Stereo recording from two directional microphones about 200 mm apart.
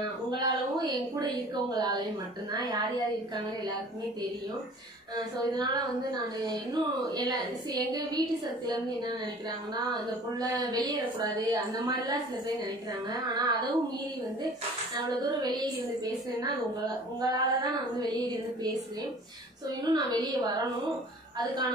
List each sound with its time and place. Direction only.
0.3 s a woman's voice: 20° right (ahead or behind)
5.1 s a woman's voice: 20° right (ahead or behind)
9.8 s a woman's voice: 20° right (ahead or behind)
15.4 s a woman's voice: 20° right (ahead or behind)
19.8 s a woman's voice: 20° right (ahead or behind)